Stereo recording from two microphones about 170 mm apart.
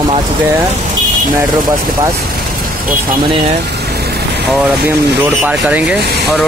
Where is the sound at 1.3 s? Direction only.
25° right (ahead or behind).